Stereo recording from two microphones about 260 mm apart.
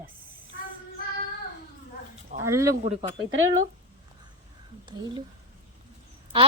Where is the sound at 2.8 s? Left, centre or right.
Right.